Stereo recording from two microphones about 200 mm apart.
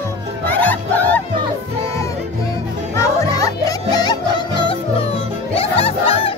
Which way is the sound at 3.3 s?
15° left (ahead or behind).